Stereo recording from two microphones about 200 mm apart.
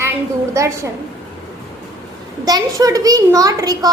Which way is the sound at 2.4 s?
20° right (ahead or behind).